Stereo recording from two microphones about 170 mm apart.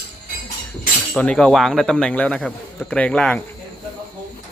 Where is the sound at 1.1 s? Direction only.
5° left (ahead or behind).